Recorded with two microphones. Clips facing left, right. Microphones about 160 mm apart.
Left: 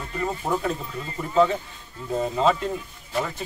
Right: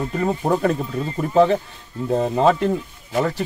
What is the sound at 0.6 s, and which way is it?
Speech, 60° right (ahead or behind).